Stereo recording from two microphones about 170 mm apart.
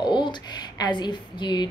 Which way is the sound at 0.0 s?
25° left (ahead or behind).